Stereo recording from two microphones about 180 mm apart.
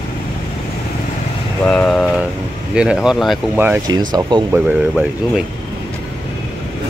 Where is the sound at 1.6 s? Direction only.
5° left (ahead or behind).